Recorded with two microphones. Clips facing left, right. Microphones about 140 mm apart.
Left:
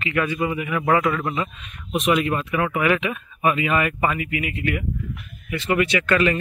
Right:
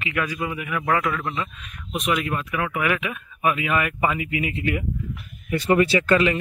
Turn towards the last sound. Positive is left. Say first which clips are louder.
# right 2 dB
turn(degrees=-30)  # may be behind; listen again after turning